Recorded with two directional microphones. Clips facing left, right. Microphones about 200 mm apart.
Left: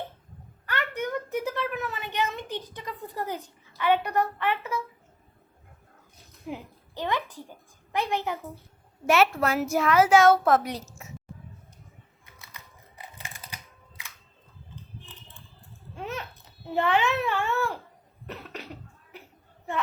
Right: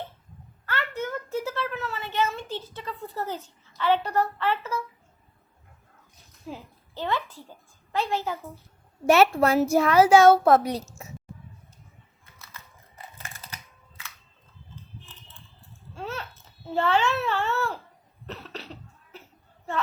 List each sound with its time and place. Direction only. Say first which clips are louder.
0.6 s a sound: even; 15° left (ahead or behind)
3.8 s a woman's voice: even; 15° left (ahead or behind)
6.5 s a child's voice: left 2 dB; 15° left (ahead or behind)
9.0 s a child's voice: right 4 dB; 35° right (ahead or behind)
12.2 s typing: right 1 dB; 15° left (ahead or behind)
14.0 s camera: right 2 dB; 15° left (ahead or behind)
16.0 s babbling: even; 15° left (ahead or behind)
18.3 s cough: even; 10° left (ahead or behind)
19.1 s a sound: even; 15° left (ahead or behind)